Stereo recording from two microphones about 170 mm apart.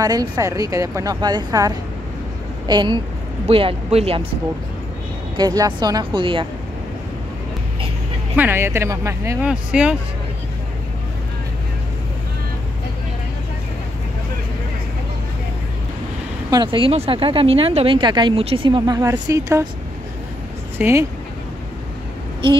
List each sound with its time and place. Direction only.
0.0 s speech: 20° right (ahead or behind)
2.7 s speech: 25° right (ahead or behind)
5.4 s speech: 20° right (ahead or behind)
8.4 s speech: 15° right (ahead or behind)
9.7 s speech: 5° right (ahead or behind)
16.4 s speech: 25° right (ahead or behind)
20.7 s speech: 15° right (ahead or behind)